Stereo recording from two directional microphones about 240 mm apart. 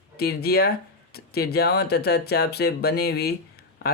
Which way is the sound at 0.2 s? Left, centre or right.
Left.